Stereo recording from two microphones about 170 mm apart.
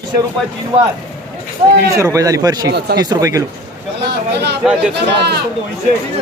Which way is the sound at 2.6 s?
75° right (ahead or behind).